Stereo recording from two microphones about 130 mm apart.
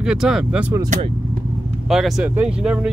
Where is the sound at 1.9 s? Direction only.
5° right (ahead or behind).